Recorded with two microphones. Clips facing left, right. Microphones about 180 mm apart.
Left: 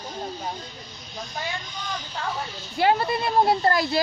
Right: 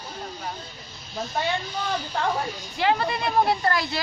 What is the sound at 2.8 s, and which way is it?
Speech, 40° left (ahead or behind).